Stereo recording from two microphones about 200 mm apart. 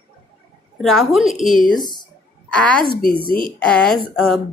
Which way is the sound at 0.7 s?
Centre (ahead or behind).